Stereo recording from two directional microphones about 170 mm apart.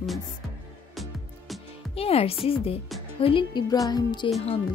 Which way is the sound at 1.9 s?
35° left (ahead or behind).